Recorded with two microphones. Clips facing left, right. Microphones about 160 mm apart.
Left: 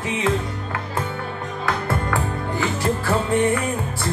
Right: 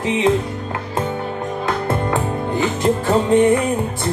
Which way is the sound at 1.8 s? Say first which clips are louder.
Right 4 dB; 20° right (ahead or behind).